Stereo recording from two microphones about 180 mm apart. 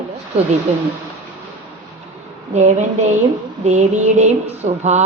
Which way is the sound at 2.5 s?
40° right (ahead or behind).